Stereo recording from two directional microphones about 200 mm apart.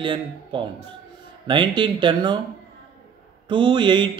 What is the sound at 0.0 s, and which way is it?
Speech, 25° right (ahead or behind).